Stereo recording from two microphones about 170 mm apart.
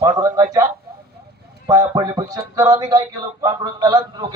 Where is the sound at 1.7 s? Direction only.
20° right (ahead or behind).